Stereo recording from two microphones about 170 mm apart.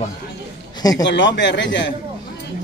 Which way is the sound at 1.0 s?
90° left.